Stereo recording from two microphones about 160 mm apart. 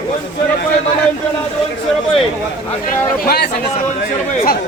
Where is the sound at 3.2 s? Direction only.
80° left.